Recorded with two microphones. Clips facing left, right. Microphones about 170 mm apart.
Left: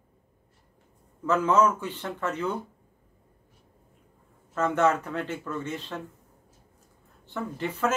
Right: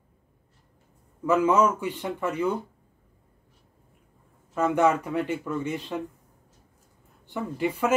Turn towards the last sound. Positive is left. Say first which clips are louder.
# right 2 dB
turn(degrees=-10)  # may be behind; listen again after turning